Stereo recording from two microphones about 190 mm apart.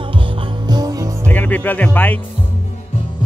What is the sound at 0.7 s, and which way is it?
Music, 20° right (ahead or behind).